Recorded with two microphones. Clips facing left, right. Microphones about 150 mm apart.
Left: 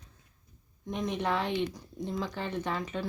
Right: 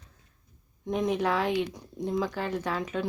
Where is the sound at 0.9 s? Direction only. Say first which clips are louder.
Right 4 dB; 5° right (ahead or behind).